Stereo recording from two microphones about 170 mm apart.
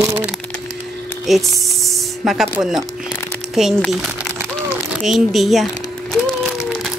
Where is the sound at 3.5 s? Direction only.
Centre (ahead or behind).